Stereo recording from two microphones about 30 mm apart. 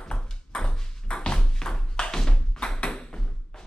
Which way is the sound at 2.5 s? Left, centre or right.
Left.